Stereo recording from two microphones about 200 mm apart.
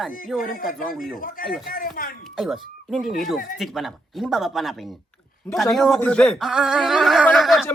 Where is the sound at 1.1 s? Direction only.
45° left (ahead or behind).